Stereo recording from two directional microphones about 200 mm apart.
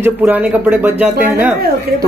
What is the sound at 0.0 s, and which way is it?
Speech, 10° right (ahead or behind).